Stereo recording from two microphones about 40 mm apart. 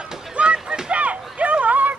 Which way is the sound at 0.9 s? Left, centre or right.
Right.